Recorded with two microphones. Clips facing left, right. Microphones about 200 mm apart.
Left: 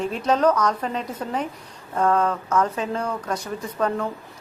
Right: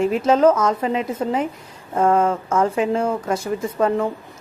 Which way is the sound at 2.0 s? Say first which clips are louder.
Right 4 dB; 25° right (ahead or behind).